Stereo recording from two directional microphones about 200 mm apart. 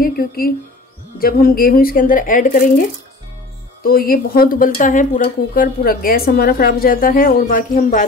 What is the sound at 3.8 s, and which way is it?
A woman's voice, 50° left (ahead or behind).